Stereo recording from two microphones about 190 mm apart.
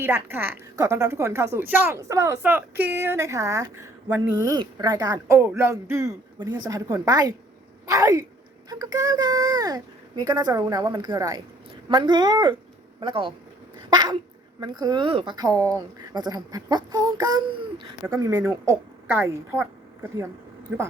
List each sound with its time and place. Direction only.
0.0 s a woman's voice: 10° right (ahead or behind)
13.9 s a sound: 20° right (ahead or behind)
14.6 s a woman's voice: 20° right (ahead or behind)